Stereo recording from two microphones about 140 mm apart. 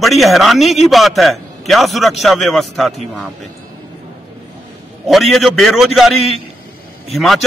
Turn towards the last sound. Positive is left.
turn(degrees=0)  # may be behind; listen again after turning